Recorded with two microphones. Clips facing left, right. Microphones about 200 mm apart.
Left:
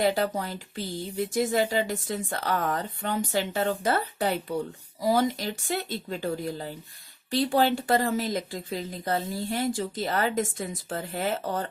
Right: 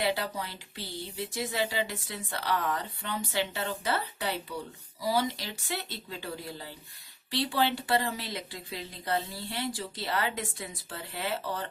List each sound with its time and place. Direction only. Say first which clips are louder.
0.0 s speech: left 6 dB; 45° left (ahead or behind)